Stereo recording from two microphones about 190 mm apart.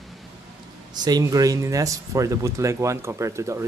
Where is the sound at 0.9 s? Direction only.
20° right (ahead or behind).